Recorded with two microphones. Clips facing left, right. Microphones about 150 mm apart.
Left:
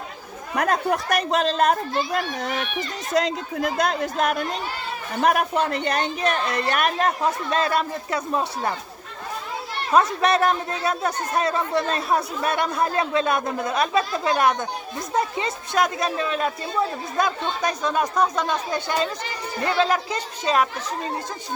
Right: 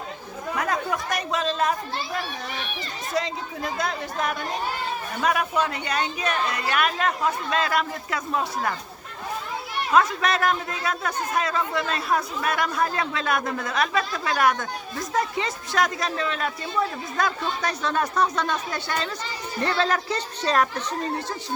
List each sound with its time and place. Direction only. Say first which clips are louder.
0.5 s speech: left 5 dB; 60° left (ahead or behind)
4.2 s speech: left 4 dB; 65° left (ahead or behind)
5.2 s speech: left 3 dB; 50° left (ahead or behind)
7.6 s a man's voice: left 2 dB; 30° left (ahead or behind)
9.9 s a man's voice: left 2 dB; 30° left (ahead or behind); by 20.8 s 10° left (ahead or behind)